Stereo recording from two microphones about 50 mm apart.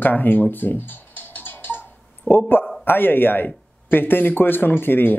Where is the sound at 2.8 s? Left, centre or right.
Left.